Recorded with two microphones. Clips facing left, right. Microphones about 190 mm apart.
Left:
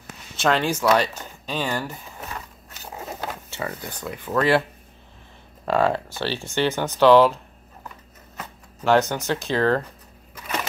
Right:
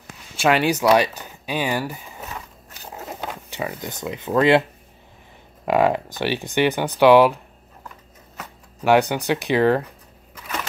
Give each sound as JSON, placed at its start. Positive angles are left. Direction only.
{"t": 0.4, "sound": "a sound", "side_deg": -10}
{"t": 3.2, "sound": "speech", "side_deg": -15}
{"t": 5.7, "sound": "speech", "side_deg": -15}
{"t": 9.1, "sound": "speech", "side_deg": -15}